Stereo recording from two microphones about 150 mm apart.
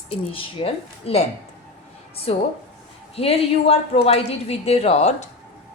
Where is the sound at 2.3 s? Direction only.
40° left (ahead or behind).